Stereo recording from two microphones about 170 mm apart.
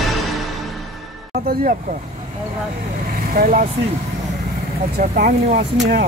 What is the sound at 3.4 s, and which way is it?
Speech, 55° right (ahead or behind).